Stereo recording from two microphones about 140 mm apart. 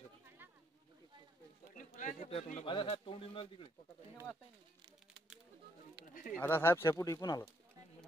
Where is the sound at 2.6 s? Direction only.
40° left (ahead or behind).